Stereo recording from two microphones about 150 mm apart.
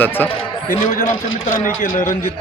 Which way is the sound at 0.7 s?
70° left (ahead or behind).